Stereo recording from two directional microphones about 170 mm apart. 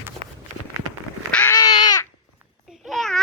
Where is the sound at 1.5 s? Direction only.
20° left (ahead or behind).